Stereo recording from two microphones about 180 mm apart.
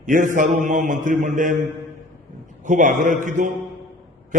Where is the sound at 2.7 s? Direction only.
45° right (ahead or behind).